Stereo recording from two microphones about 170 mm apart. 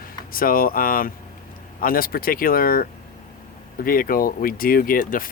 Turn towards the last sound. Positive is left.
turn(degrees=55)  # may be behind; listen again after turning